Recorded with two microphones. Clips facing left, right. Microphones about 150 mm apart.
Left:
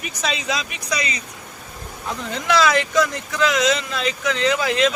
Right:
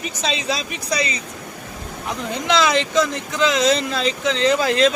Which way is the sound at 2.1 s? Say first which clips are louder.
Right 1 dB; 20° right (ahead or behind).